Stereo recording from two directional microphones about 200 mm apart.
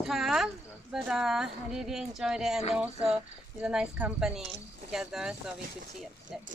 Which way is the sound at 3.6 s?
5° right (ahead or behind).